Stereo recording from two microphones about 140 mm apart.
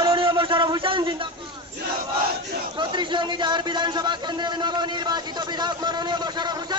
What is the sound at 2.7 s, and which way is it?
A man's voice, 35° right (ahead or behind).